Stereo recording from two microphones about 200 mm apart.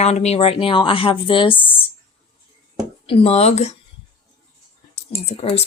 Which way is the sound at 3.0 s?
30° left (ahead or behind).